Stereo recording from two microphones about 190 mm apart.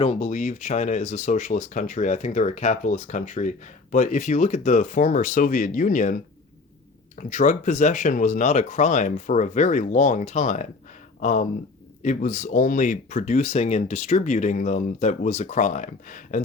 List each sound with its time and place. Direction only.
0.0 s speech: 35° left (ahead or behind)
7.2 s speech: 40° left (ahead or behind)